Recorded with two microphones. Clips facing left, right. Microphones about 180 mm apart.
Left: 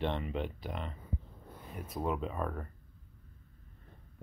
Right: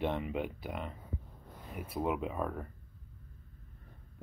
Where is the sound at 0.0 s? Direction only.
10° right (ahead or behind).